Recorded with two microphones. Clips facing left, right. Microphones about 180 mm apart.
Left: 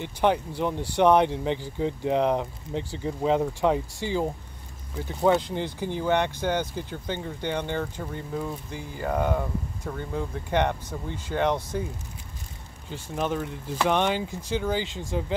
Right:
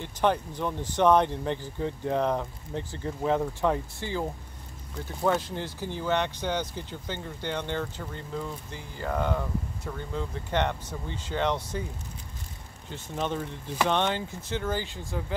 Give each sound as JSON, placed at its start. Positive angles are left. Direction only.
{"t": 0.0, "sound": "speech", "side_deg": 15}
{"t": 12.9, "sound": "speech", "side_deg": 10}